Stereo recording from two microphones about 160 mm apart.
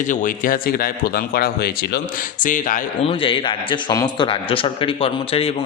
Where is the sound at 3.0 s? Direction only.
35° left (ahead or behind).